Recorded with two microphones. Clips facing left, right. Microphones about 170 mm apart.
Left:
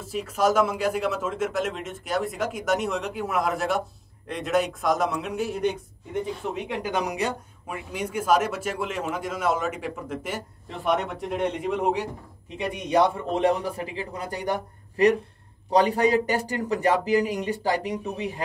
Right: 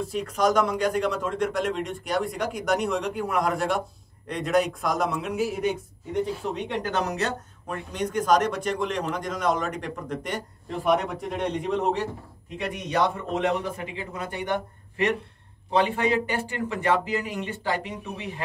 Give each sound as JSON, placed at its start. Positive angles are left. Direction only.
{"t": 0.0, "sound": "speech", "side_deg": 5}
{"t": 12.5, "sound": "a man's voice", "side_deg": 30}